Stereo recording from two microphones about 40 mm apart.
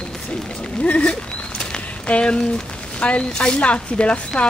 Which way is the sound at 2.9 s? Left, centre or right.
Left.